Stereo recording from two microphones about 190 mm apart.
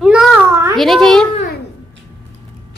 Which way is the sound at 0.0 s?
5° right (ahead or behind).